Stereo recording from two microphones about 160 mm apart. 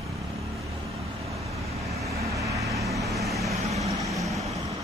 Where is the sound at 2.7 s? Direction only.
Centre (ahead or behind).